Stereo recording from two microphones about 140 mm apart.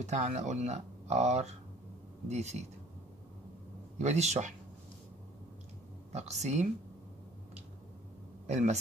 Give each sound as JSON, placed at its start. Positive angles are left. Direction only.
{"t": 0.0, "sound": "speech", "side_deg": -55}
{"t": 4.0, "sound": "speech", "side_deg": -55}
{"t": 6.1, "sound": "speech", "side_deg": -55}
{"t": 8.5, "sound": "speech", "side_deg": -55}